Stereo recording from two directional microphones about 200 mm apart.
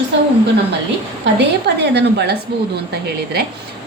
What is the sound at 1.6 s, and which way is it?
Speech, 60° right (ahead or behind).